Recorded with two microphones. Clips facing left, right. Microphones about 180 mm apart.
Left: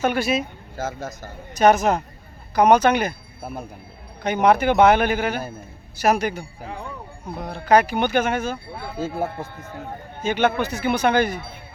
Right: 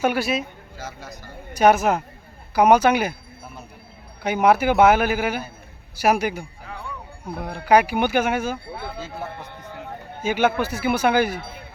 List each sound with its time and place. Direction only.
0.0 s speech: 5° right (ahead or behind)
0.8 s speech: 45° left (ahead or behind)
1.5 s speech: 10° right (ahead or behind)
3.4 s speech: 55° left (ahead or behind)
4.2 s speech: 10° right (ahead or behind)
9.0 s speech: 50° left (ahead or behind)
10.2 s speech: 10° right (ahead or behind)